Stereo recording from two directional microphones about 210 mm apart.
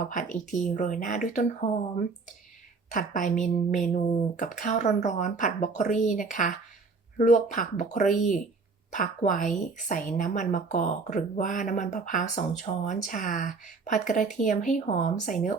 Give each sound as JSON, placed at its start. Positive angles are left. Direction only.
{"t": 0.1, "sound": "speech", "side_deg": 35}
{"t": 2.9, "sound": "speech", "side_deg": 35}